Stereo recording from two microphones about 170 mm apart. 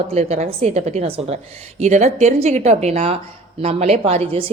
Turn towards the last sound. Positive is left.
turn(degrees=-35)  # may be behind; listen again after turning